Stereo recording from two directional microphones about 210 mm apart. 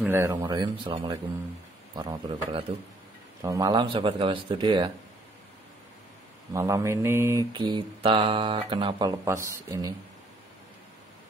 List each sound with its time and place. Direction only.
0.0 s speech: 10° right (ahead or behind)
6.5 s mantra: 15° right (ahead or behind)